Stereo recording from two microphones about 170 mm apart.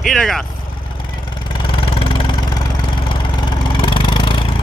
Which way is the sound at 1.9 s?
30° left (ahead or behind).